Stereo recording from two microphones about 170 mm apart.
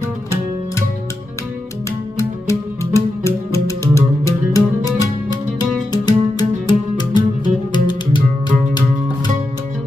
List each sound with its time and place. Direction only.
2.1 s music: 15° left (ahead or behind)